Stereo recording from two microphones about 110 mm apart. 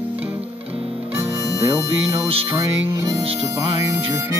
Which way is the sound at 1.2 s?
30° right (ahead or behind).